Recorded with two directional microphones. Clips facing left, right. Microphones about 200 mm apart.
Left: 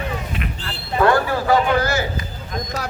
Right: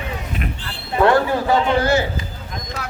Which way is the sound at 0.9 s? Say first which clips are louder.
Right 2 dB; 20° right (ahead or behind).